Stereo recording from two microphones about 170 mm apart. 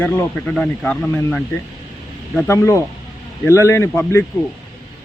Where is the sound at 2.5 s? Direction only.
15° left (ahead or behind).